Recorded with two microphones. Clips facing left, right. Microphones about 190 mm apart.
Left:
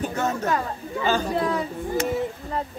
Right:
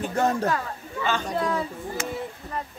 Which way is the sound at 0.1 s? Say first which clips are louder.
Right 2 dB; 35° right (ahead or behind).